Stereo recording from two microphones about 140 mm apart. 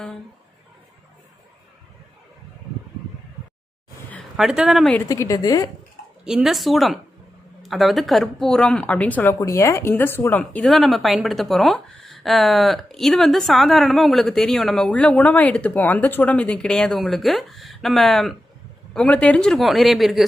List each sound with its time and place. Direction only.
4.4 s speech: 5° right (ahead or behind)
5.0 s a woman's voice: 25° left (ahead or behind)
6.2 s speech: 5° right (ahead or behind)